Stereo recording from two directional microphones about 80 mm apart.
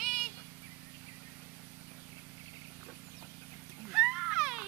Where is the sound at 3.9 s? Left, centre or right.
Centre.